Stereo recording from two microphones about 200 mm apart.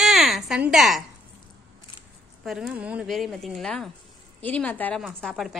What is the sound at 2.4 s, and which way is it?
A woman's voice, centre (ahead or behind).